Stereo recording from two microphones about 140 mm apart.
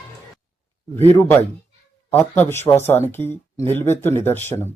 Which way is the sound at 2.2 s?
15° left (ahead or behind).